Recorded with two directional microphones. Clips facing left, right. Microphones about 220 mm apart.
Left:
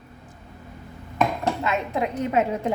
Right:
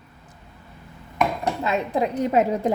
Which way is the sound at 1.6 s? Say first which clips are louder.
Right 2 dB; 35° right (ahead or behind).